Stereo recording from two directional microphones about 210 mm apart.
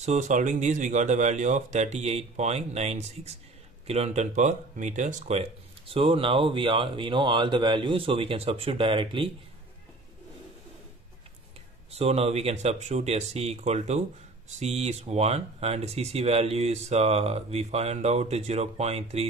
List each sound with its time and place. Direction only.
0.0 s speech: 35° right (ahead or behind)
11.9 s speech: 30° right (ahead or behind)